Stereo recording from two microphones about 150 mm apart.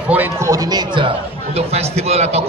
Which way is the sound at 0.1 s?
15° right (ahead or behind).